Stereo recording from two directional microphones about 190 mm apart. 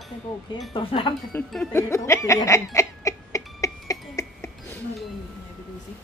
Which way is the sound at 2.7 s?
15° left (ahead or behind).